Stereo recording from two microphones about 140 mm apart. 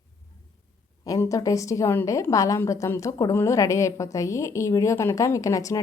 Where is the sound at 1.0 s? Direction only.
25° left (ahead or behind).